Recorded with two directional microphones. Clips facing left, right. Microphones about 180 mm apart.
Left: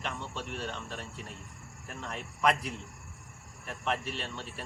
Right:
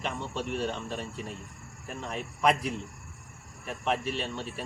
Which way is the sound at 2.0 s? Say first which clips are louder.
Right 3 dB; 10° right (ahead or behind).